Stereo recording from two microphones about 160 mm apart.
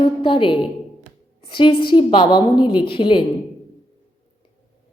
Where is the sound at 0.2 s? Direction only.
30° left (ahead or behind).